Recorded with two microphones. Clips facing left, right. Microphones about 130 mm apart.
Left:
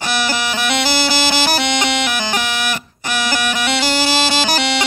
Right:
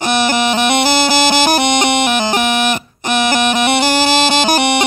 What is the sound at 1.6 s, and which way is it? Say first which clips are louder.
Bagpipes: right 5 dB; 20° right (ahead or behind).